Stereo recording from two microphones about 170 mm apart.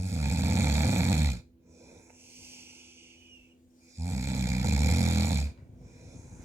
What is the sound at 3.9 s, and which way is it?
Snoring, 15° right (ahead or behind).